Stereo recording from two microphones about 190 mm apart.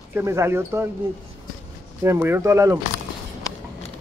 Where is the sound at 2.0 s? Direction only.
15° right (ahead or behind).